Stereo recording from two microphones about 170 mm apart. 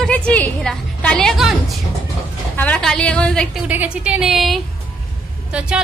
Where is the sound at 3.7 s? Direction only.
10° right (ahead or behind).